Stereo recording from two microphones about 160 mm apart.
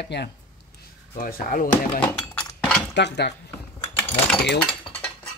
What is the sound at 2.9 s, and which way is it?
Speech, 90° left.